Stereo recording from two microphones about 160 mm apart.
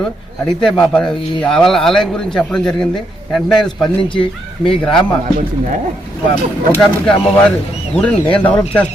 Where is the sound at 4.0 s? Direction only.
35° left (ahead or behind).